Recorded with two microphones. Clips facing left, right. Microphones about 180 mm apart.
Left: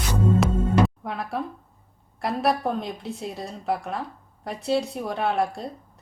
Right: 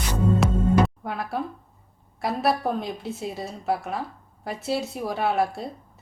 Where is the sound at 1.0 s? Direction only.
Centre (ahead or behind).